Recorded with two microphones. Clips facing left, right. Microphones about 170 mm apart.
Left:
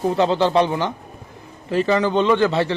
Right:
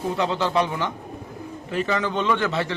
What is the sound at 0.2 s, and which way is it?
A man's voice, 30° left (ahead or behind).